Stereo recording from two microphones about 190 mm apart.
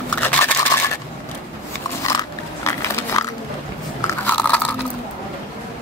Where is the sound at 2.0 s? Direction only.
15° left (ahead or behind).